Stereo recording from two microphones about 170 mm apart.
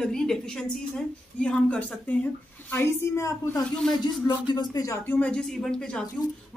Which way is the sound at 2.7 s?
15° left (ahead or behind).